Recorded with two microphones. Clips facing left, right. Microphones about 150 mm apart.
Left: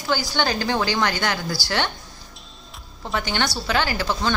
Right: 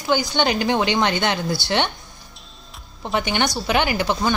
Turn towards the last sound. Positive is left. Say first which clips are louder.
# right 3 dB
turn(degrees=-20)  # may be behind; listen again after turning